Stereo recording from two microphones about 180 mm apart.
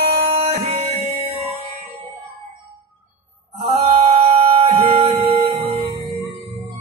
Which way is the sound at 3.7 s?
35° right (ahead or behind).